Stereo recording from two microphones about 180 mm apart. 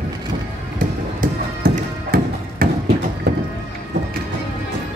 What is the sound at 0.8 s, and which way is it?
Music, 50° right (ahead or behind).